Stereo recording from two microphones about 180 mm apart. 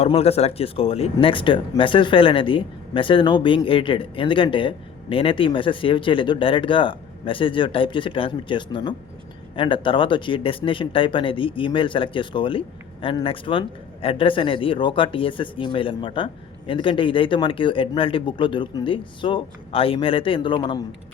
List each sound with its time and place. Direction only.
0.0 s speech: 35° left (ahead or behind)